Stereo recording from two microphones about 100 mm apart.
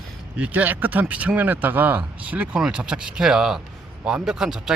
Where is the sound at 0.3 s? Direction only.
15° right (ahead or behind).